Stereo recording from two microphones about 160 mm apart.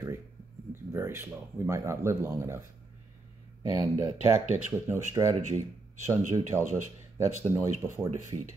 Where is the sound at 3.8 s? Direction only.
20° right (ahead or behind).